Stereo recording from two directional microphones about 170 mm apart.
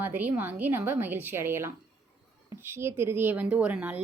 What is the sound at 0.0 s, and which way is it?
A woman's voice, 10° right (ahead or behind).